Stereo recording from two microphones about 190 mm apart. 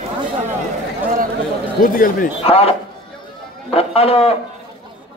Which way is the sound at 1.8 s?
45° left (ahead or behind).